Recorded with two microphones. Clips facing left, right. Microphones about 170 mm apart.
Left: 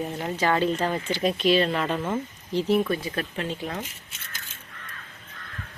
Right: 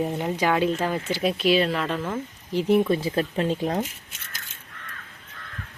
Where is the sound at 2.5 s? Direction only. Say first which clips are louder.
Right 3 dB; 20° right (ahead or behind); by 3.8 s 35° right (ahead or behind).